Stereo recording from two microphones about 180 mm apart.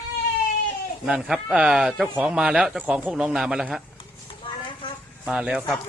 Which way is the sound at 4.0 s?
30° left (ahead or behind).